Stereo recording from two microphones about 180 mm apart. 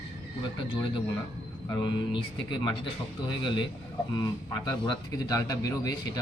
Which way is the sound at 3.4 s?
25° left (ahead or behind).